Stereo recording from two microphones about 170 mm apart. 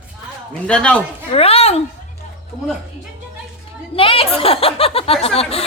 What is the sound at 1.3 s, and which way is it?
Chuckle, 35° left (ahead or behind).